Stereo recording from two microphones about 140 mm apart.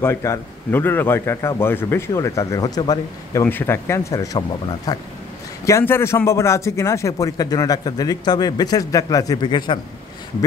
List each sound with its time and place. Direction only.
0.0 s speech: 20° left (ahead or behind)
3.4 s a man's voice: 15° left (ahead or behind); by 9.8 s 35° left (ahead or behind)